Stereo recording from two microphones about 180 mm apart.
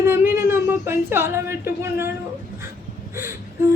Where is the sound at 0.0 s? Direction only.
15° right (ahead or behind).